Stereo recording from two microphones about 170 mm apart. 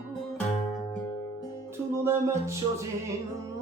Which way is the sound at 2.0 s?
15° right (ahead or behind).